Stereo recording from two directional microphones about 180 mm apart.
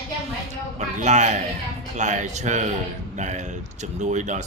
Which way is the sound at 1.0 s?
40° right (ahead or behind).